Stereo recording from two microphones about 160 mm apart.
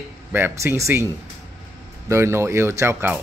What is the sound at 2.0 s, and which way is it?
Speech, 15° right (ahead or behind).